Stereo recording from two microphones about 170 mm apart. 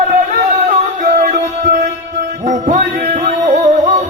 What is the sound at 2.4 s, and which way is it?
Music, 45° right (ahead or behind).